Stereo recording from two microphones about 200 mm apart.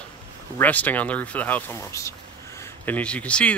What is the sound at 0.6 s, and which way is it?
Speech, 10° left (ahead or behind).